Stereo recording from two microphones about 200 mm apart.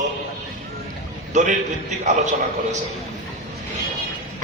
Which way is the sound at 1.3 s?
35° right (ahead or behind).